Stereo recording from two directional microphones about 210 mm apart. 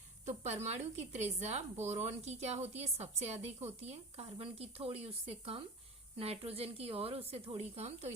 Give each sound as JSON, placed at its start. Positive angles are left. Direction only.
{"t": 0.3, "sound": "a woman's voice", "side_deg": -30}